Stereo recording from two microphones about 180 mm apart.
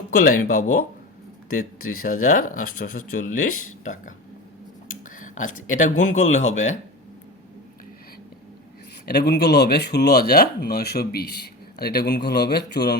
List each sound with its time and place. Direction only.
0.3 s speech: 45° left (ahead or behind)
4.9 s a sound: 45° left (ahead or behind)
5.6 s speech: 45° left (ahead or behind)
9.0 s speech: 60° left (ahead or behind)